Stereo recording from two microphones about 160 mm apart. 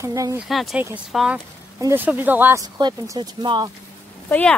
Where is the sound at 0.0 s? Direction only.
20° right (ahead or behind).